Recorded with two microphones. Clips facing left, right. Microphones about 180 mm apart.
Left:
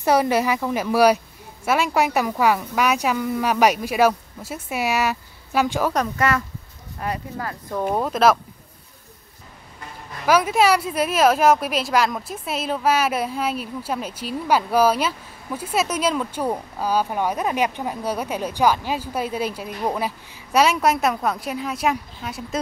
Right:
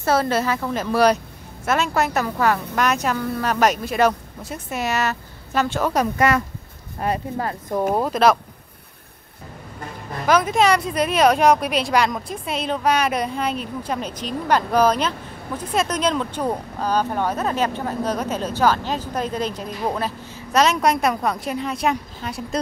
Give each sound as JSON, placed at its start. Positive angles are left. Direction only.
{"t": 0.0, "sound": "speech", "side_deg": 15}
{"t": 6.1, "sound": "speech", "side_deg": -15}
{"t": 7.0, "sound": "speech", "side_deg": -30}
{"t": 7.9, "sound": "speech", "side_deg": 0}
{"t": 10.2, "sound": "speech", "side_deg": 10}